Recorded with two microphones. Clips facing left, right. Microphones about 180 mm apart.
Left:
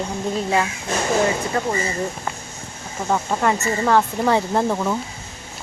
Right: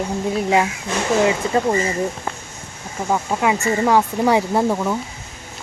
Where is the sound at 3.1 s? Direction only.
5° right (ahead or behind).